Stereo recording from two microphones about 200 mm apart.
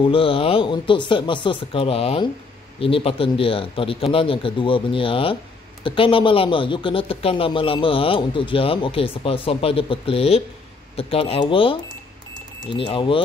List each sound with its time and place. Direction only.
0.0 s speech: 25° left (ahead or behind)